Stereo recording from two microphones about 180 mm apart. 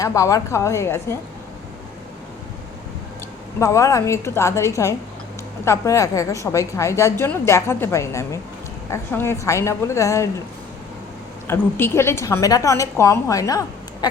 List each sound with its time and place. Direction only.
0.0 s a woman's voice: 20° left (ahead or behind)
3.6 s a woman's voice: 15° left (ahead or behind)
11.4 s a woman's voice: 10° left (ahead or behind)